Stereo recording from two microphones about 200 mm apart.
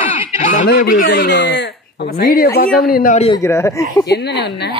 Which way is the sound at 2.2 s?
45° left (ahead or behind).